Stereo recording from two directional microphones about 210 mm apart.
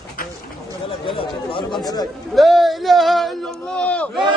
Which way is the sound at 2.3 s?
Centre (ahead or behind).